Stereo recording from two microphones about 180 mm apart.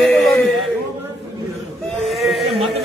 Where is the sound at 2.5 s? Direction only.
30° right (ahead or behind).